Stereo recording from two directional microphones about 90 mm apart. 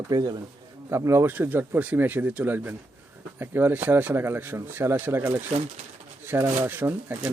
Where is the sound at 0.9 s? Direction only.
30° right (ahead or behind).